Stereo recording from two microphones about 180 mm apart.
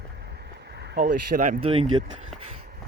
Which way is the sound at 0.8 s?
70° right (ahead or behind).